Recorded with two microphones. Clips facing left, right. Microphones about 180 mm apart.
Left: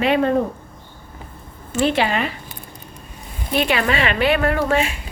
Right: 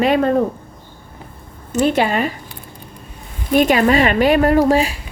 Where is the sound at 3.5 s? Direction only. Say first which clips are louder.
Right 7 dB; 45° right (ahead or behind).